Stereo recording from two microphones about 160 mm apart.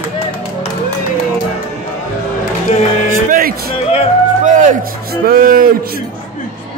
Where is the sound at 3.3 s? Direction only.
65° right (ahead or behind).